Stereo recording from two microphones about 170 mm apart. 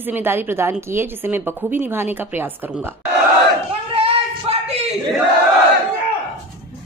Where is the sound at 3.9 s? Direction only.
35° right (ahead or behind).